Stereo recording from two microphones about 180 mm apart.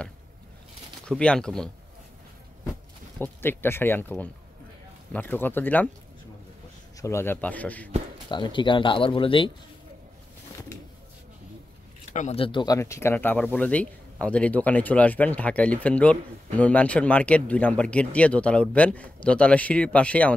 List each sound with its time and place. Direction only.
1.0 s speech: 5° left (ahead or behind)
3.2 s speech: 10° left (ahead or behind)
7.0 s speech: 15° left (ahead or behind)
8.3 s speech: 25° left (ahead or behind)
12.1 s speech: 40° left (ahead or behind); by 20.3 s 5° left (ahead or behind)